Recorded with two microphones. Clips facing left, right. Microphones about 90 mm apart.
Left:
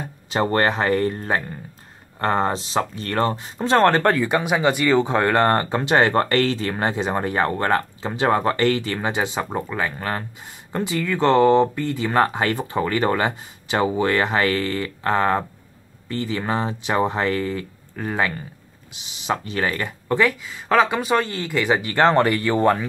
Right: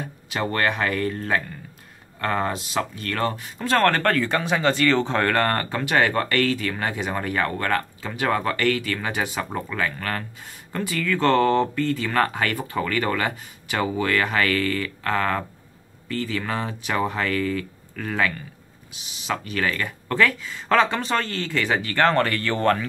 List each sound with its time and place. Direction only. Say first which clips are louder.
0.3 s speech: left 4 dB; 30° left (ahead or behind); by 22.8 s 15° left (ahead or behind)